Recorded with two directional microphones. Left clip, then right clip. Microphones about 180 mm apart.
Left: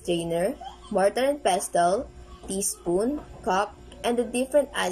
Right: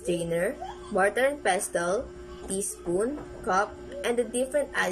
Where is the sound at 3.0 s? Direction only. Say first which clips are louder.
Left 2 dB; 5° left (ahead or behind).